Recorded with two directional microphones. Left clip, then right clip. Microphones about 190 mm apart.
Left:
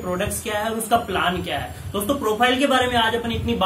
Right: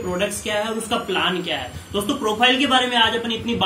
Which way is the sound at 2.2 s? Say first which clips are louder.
Right 2 dB; 20° left (ahead or behind).